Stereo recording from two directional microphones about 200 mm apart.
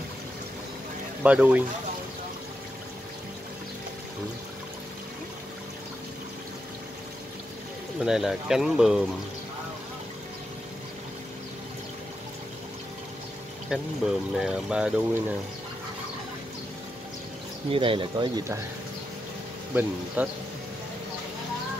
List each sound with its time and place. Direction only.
1.2 s speech: 5° right (ahead or behind)
8.0 s speech: centre (ahead or behind)
13.7 s speech: 5° right (ahead or behind)
17.6 s speech: 25° right (ahead or behind)
19.7 s speech: 10° right (ahead or behind)